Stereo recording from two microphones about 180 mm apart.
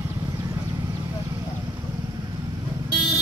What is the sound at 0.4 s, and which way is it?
Horse, 20° right (ahead or behind).